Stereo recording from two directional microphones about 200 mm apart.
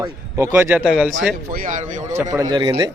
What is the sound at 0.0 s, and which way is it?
A man's voice, 15° right (ahead or behind).